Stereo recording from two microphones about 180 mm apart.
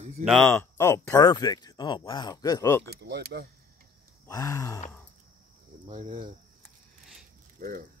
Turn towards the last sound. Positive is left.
turn(degrees=-40)  # may be behind; listen again after turning